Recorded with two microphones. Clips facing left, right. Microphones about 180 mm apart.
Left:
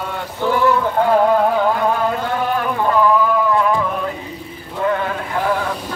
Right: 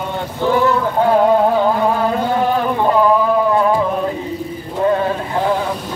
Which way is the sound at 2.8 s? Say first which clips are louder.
Right 1 dB; 30° right (ahead or behind).